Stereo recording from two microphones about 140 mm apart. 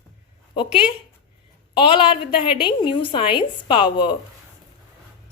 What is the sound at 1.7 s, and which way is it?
A woman's voice, 35° left (ahead or behind).